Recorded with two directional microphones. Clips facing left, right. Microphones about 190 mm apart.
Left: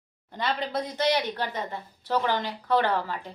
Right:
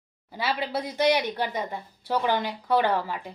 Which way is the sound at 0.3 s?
5° right (ahead or behind).